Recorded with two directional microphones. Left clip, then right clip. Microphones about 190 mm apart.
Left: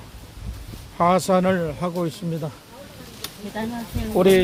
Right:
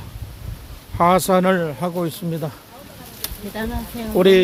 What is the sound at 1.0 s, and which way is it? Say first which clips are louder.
Speech: right 3 dB; 20° right (ahead or behind).